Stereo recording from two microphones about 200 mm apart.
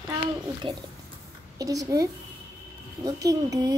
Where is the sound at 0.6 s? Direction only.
25° right (ahead or behind).